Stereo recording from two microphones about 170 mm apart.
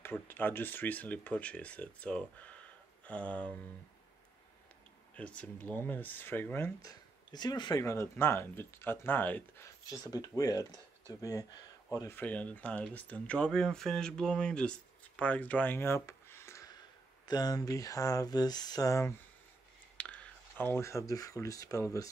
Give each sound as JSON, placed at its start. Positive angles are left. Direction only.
{"t": 0.0, "sound": "speech", "side_deg": 10}
{"t": 5.1, "sound": "speech", "side_deg": 5}
{"t": 20.0, "sound": "speech", "side_deg": 5}